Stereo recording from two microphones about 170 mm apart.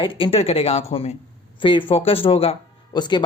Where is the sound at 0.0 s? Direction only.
30° left (ahead or behind).